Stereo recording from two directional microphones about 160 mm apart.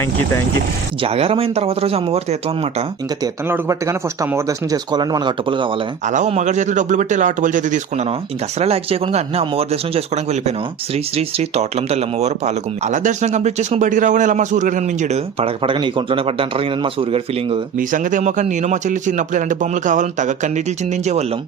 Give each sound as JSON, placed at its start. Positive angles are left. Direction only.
{"t": 1.0, "sound": "speech", "side_deg": -40}
{"t": 3.5, "sound": "speech", "side_deg": -20}
{"t": 6.1, "sound": "speech", "side_deg": -45}
{"t": 8.5, "sound": "speech", "side_deg": -40}
{"t": 17.7, "sound": "speech", "side_deg": -55}